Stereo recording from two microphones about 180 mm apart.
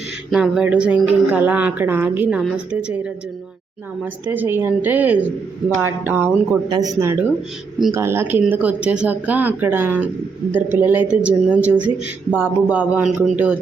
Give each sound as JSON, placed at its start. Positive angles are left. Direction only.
{"t": 0.3, "sound": "speech", "side_deg": 0}
{"t": 6.7, "sound": "speech", "side_deg": -20}